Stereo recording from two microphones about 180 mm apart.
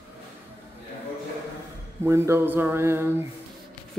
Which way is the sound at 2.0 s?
15° right (ahead or behind).